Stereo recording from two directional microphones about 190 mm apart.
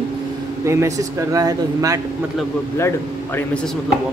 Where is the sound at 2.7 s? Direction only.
10° left (ahead or behind).